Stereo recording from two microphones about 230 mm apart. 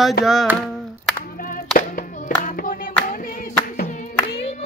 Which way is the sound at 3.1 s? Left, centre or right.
Left.